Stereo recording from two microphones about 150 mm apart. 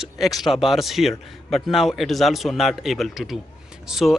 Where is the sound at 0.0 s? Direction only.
Centre (ahead or behind).